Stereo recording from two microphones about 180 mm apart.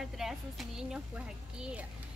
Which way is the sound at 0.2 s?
Centre (ahead or behind).